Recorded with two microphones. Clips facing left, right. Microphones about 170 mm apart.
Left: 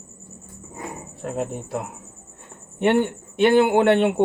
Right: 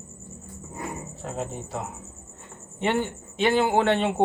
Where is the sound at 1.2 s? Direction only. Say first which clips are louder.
Left 6 dB; 60° left (ahead or behind).